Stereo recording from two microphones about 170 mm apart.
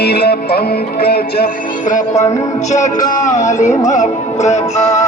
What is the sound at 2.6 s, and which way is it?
Music, 45° left (ahead or behind).